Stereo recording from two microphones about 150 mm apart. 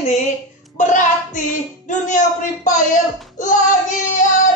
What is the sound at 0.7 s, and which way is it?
Speech, 55° left (ahead or behind).